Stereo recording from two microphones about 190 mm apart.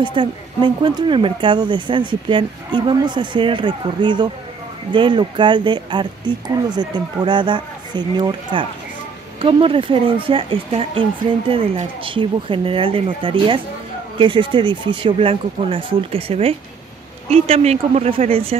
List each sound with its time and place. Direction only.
0.0 s speech: 25° right (ahead or behind)